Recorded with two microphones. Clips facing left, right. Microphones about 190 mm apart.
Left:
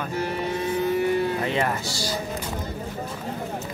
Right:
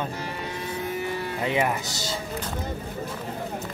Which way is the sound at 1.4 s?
15° right (ahead or behind).